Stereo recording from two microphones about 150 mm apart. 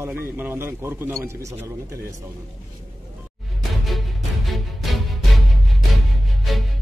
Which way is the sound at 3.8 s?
Centre (ahead or behind).